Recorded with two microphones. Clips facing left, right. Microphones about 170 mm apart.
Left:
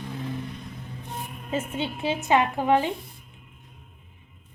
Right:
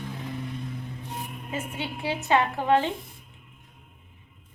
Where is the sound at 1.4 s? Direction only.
25° left (ahead or behind).